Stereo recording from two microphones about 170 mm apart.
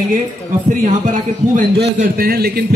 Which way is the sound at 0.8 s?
50° right (ahead or behind).